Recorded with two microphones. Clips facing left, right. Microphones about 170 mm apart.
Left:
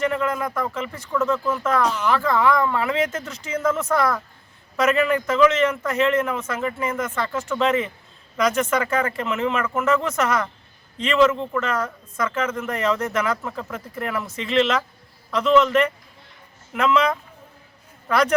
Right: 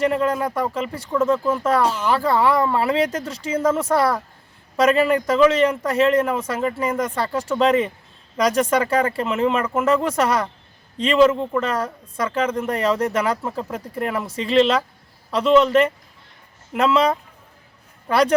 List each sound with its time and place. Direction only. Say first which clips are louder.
0.0 s speech: right 3 dB; 30° right (ahead or behind)